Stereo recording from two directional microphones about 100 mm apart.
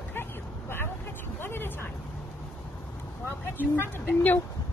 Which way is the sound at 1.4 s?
20° left (ahead or behind).